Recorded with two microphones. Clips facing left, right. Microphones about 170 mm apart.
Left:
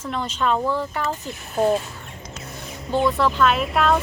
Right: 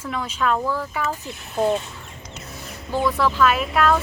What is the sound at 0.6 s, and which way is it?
Speech, 20° left (ahead or behind).